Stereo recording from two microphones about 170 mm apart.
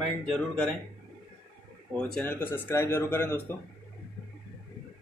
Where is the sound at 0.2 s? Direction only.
5° left (ahead or behind).